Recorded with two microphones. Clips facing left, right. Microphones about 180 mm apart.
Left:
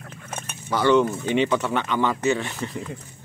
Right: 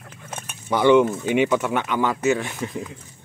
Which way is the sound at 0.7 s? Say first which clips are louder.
Right 3 dB; 15° right (ahead or behind).